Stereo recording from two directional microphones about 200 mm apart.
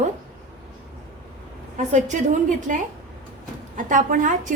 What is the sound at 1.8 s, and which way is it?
A woman's voice, 35° right (ahead or behind).